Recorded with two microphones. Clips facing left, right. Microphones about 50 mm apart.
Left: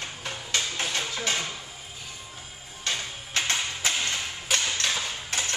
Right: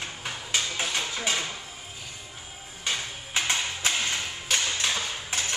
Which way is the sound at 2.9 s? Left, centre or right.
Centre.